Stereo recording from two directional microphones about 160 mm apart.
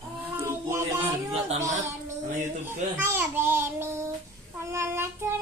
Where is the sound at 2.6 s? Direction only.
15° right (ahead or behind).